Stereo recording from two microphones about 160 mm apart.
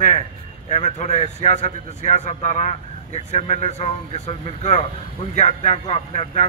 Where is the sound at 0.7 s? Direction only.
45° left (ahead or behind).